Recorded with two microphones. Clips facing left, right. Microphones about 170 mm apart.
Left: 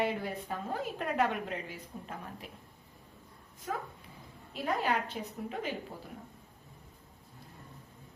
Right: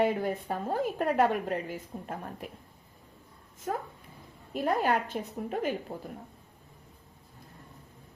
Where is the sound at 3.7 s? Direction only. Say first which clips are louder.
Right 4 dB; 45° right (ahead or behind).